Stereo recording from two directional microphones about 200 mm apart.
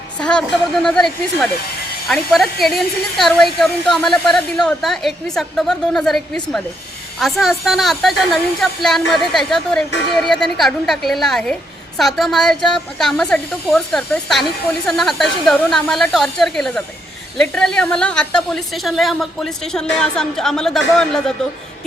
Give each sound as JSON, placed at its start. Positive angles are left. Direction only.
{"t": 0.2, "sound": "a woman's voice", "side_deg": 5}